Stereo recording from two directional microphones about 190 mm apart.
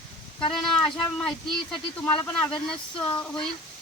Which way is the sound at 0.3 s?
5° left (ahead or behind).